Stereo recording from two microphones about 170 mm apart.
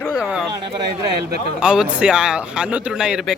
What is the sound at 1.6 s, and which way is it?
Speech, 5° right (ahead or behind).